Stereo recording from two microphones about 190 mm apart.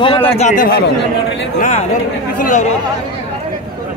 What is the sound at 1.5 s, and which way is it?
A man's voice, 40° left (ahead or behind).